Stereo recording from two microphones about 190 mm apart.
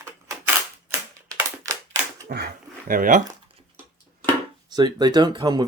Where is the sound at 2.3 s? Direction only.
55° right (ahead or behind).